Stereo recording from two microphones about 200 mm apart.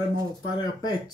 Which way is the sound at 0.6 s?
20° left (ahead or behind).